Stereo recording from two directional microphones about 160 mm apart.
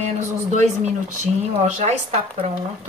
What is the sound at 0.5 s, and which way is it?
Speech, 50° right (ahead or behind).